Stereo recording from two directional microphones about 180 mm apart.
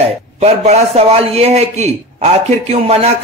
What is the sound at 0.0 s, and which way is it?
Speech, 35° right (ahead or behind).